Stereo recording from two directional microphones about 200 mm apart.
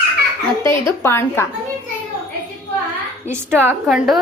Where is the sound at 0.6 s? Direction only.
15° left (ahead or behind).